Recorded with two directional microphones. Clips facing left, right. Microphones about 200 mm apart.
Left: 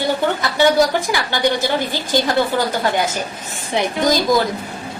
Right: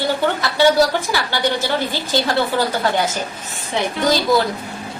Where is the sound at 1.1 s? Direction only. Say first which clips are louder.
Left 2 dB; 15° left (ahead or behind).